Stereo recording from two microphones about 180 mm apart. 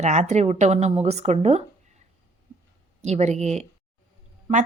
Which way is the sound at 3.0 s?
40° right (ahead or behind).